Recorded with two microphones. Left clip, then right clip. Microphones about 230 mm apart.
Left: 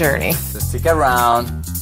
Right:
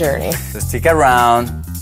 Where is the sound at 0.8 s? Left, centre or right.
Right.